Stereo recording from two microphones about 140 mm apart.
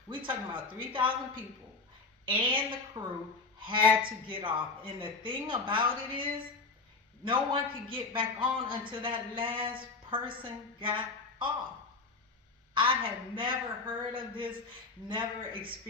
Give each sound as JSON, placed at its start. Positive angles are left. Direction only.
{"t": 0.1, "sound": "a man's voice", "side_deg": -35}
{"t": 7.3, "sound": "a man's voice", "side_deg": -35}
{"t": 12.7, "sound": "a man's voice", "side_deg": -40}